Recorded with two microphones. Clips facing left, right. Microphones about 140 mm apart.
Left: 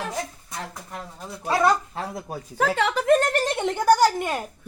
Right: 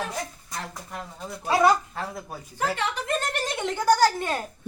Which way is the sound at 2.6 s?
90° left.